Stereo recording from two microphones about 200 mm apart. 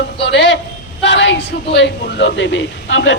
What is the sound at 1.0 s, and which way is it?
A man's voice, 60° left (ahead or behind).